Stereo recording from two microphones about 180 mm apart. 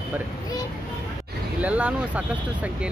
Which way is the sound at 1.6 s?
5° right (ahead or behind).